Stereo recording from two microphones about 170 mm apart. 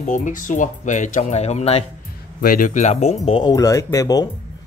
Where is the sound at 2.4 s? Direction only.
55° left (ahead or behind); by 3.4 s 40° left (ahead or behind).